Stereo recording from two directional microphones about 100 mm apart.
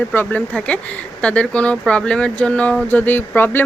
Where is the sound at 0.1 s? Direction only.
20° left (ahead or behind).